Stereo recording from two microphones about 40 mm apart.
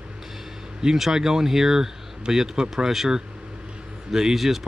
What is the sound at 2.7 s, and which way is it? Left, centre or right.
Speech, centre.